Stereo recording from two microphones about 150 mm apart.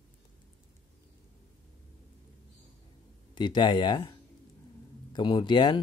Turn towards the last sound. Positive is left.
turn(degrees=30)  # may be behind; listen again after turning